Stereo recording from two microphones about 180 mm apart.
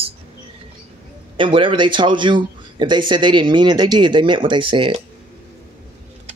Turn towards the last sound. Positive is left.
turn(degrees=-30)  # may be behind; listen again after turning